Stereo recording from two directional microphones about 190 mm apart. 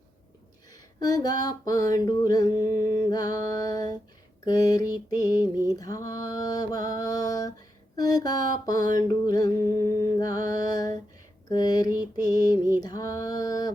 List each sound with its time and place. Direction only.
0.7 s mantra: 20° left (ahead or behind)